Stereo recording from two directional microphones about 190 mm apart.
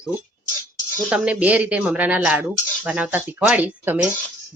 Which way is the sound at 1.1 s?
5° right (ahead or behind).